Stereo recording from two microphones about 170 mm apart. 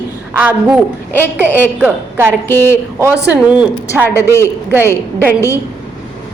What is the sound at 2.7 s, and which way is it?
Speech, 15° right (ahead or behind).